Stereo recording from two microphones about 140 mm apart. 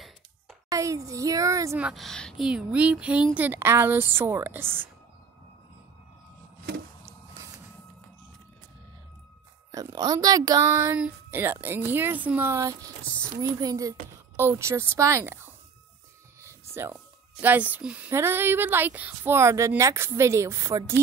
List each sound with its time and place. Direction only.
0.7 s a woman's voice: 25° right (ahead or behind)
1.8 s speech: 5° right (ahead or behind)
9.7 s a woman's voice: 25° right (ahead or behind)